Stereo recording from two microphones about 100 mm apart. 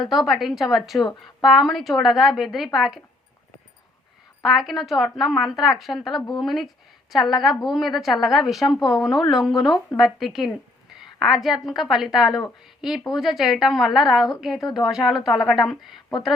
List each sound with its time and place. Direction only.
0.0 s a woman's voice: centre (ahead or behind)
4.4 s a woman's voice: centre (ahead or behind)
6.1 s speech: 45° left (ahead or behind)
6.4 s a woman's voice: centre (ahead or behind)